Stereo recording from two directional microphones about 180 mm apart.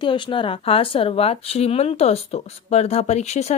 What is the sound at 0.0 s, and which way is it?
A woman's voice, 25° left (ahead or behind).